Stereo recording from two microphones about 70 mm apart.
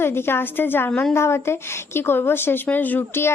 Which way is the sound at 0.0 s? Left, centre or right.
Left.